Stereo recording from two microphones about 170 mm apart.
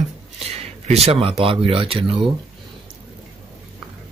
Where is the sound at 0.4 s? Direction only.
35° right (ahead or behind).